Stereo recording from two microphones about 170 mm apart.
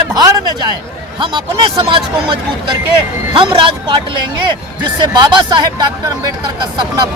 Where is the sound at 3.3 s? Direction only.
30° right (ahead or behind).